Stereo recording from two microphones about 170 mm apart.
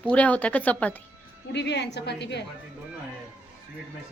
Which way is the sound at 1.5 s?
90° left.